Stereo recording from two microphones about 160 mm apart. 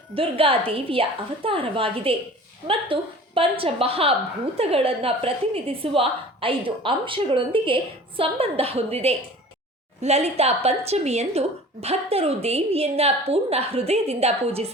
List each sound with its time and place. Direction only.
0.2 s a woman's voice: 35° right (ahead or behind)